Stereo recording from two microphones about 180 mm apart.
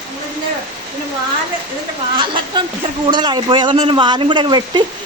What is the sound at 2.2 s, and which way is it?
Speech, 25° right (ahead or behind).